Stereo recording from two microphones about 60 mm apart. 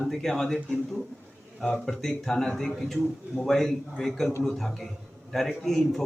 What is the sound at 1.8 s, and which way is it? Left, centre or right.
A man's voice, centre.